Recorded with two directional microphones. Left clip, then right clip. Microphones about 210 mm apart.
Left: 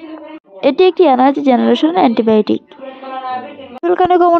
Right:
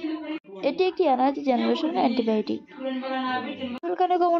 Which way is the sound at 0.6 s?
30° left (ahead or behind).